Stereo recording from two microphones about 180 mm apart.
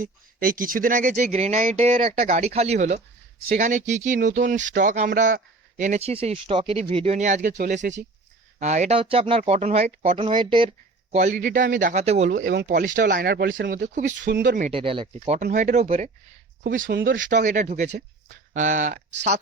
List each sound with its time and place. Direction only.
0.0 s speech: 50° right (ahead or behind); by 10.8 s 30° right (ahead or behind)
11.1 s speech: 40° right (ahead or behind)
12.5 s speech: 60° right (ahead or behind)
14.3 s speech: 65° right (ahead or behind)
14.7 s speech: 30° right (ahead or behind)
15.4 s speech: 45° right (ahead or behind)